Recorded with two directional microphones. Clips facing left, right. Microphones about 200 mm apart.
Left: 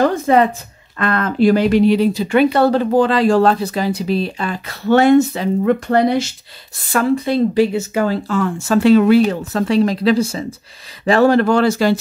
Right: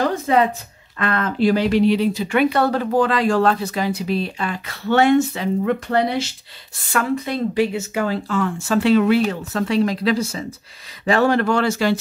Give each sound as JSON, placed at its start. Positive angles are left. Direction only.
{"t": 0.3, "sound": "speech", "side_deg": 50}
{"t": 6.9, "sound": "speech", "side_deg": 30}